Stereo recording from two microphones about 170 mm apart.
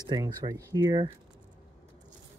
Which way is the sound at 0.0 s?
20° right (ahead or behind).